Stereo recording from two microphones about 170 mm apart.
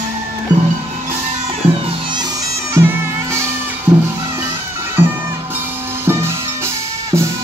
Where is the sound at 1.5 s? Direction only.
30° right (ahead or behind).